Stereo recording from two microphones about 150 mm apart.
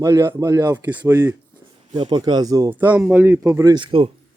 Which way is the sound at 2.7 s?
10° right (ahead or behind).